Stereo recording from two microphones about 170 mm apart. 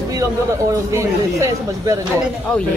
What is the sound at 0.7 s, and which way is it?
Speech, 15° right (ahead or behind).